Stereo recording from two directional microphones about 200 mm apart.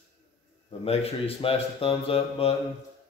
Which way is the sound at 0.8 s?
30° left (ahead or behind).